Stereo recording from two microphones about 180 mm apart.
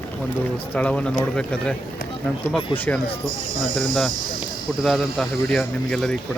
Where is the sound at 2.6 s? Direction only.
30° left (ahead or behind).